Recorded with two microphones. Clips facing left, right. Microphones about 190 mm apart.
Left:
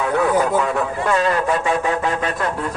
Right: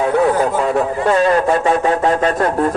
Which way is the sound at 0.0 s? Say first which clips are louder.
Right 3 dB; 35° right (ahead or behind).